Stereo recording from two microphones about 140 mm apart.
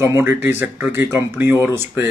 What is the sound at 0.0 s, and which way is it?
Speech, 20° right (ahead or behind).